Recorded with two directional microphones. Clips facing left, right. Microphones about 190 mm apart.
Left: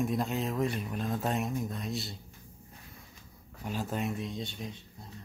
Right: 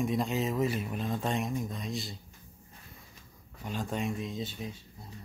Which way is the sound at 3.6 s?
5° left (ahead or behind).